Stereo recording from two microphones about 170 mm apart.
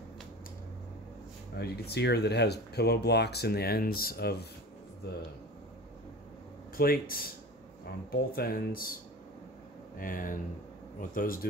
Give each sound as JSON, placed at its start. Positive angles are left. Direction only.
{"t": 1.6, "sound": "speech", "side_deg": 75}
{"t": 6.8, "sound": "speech", "side_deg": 60}
{"t": 9.9, "sound": "speech", "side_deg": 55}